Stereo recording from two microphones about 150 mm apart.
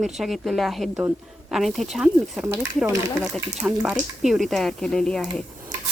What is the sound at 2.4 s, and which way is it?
Speech, 15° right (ahead or behind).